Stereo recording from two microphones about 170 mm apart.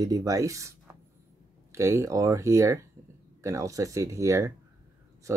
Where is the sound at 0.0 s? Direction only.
20° right (ahead or behind).